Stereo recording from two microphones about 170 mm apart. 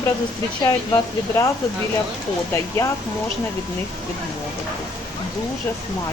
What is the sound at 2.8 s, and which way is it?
Speech, 15° left (ahead or behind).